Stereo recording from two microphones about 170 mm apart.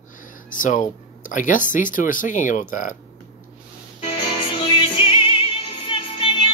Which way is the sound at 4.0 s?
30° left (ahead or behind).